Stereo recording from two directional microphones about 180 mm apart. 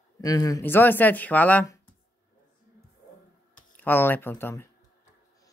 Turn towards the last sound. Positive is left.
turn(degrees=10)  # may be behind; listen again after turning